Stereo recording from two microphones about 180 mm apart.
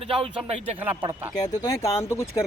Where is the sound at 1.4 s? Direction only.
20° left (ahead or behind).